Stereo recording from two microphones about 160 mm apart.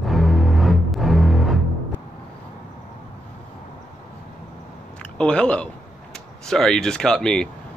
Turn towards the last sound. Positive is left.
turn(degrees=5)  # may be behind; listen again after turning